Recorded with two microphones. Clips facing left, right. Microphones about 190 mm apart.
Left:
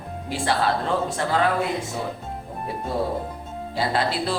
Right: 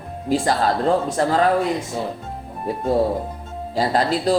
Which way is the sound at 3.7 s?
40° right (ahead or behind).